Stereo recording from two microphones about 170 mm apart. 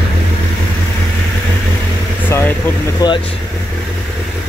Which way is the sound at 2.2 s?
10° left (ahead or behind).